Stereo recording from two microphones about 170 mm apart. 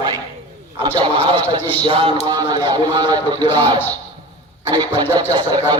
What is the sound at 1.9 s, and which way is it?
Music, 30° right (ahead or behind).